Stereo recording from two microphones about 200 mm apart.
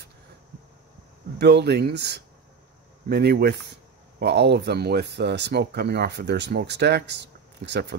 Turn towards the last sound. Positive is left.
turn(degrees=-60)  # may be behind; listen again after turning